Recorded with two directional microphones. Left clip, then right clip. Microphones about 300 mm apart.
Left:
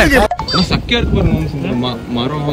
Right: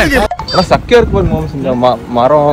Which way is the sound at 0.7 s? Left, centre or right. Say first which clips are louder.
Right 9 dB; centre.